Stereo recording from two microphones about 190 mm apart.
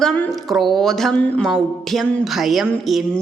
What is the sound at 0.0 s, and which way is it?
Speech, 5° left (ahead or behind).